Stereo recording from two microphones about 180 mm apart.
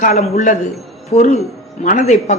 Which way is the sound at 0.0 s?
40° left (ahead or behind).